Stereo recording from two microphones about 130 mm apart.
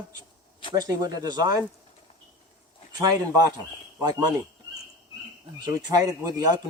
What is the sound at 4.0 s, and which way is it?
Speech, 30° right (ahead or behind).